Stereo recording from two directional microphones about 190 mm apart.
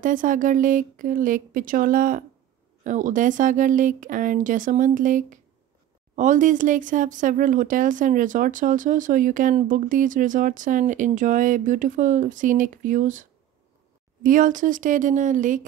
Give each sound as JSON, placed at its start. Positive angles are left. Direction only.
{"t": 0.0, "sound": "speech", "side_deg": -45}